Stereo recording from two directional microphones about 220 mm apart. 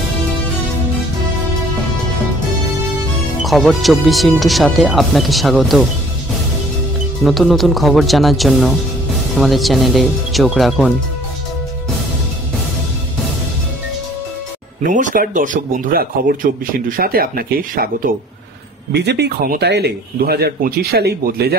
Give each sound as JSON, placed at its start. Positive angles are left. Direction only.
{"t": 3.4, "sound": "speech", "side_deg": 0}
{"t": 7.2, "sound": "speech", "side_deg": 0}
{"t": 14.8, "sound": "a man's voice", "side_deg": -35}